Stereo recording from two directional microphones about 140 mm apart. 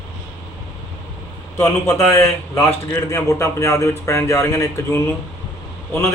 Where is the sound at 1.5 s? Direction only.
20° left (ahead or behind).